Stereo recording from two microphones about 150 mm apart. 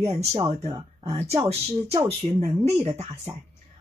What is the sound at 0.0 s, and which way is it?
Speech, 45° right (ahead or behind).